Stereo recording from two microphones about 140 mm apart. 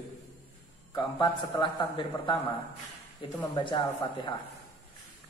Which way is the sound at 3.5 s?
35° left (ahead or behind).